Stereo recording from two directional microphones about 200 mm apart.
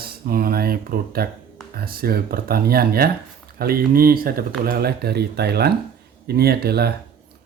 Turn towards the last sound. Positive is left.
turn(degrees=-50)  # may be behind; listen again after turning